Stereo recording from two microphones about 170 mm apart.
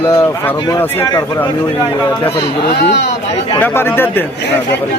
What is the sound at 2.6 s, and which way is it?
Speech, 90° left.